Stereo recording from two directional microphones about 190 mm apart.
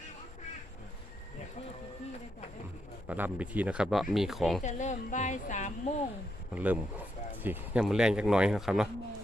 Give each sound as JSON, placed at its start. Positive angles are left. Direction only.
{"t": 3.1, "sound": "speech", "side_deg": -10}
{"t": 4.6, "sound": "a woman's voice", "side_deg": 40}
{"t": 6.5, "sound": "speech", "side_deg": -10}